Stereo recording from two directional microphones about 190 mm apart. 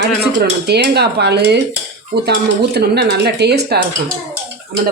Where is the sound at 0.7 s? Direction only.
60° right (ahead or behind).